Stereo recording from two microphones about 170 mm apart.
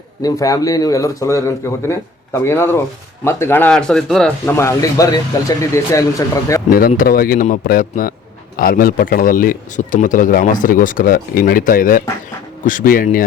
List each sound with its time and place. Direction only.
0.2 s speech: 20° left (ahead or behind); by 4.5 s 5° left (ahead or behind)
4.5 s speech: 20° left (ahead or behind)
6.7 s a man's voice: 60° left (ahead or behind)